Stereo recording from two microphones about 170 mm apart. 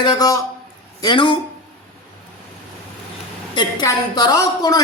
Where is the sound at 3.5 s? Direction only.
25° left (ahead or behind).